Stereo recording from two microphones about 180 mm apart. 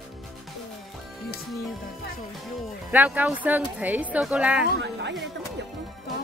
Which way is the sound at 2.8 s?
10° right (ahead or behind).